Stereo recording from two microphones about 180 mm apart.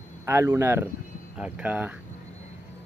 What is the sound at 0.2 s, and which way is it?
Speech, 15° right (ahead or behind).